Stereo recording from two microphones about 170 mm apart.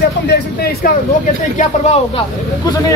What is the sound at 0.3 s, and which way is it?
Speech, 65° left (ahead or behind).